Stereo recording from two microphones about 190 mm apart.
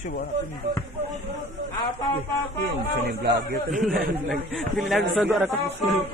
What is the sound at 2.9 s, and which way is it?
Speech, 60° right (ahead or behind).